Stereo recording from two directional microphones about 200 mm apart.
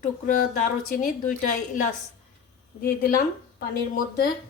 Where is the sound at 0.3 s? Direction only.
40° left (ahead or behind).